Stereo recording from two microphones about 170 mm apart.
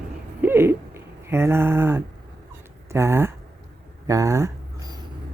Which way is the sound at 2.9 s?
15° right (ahead or behind).